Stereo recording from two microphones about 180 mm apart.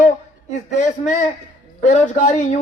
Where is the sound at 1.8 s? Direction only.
40° left (ahead or behind).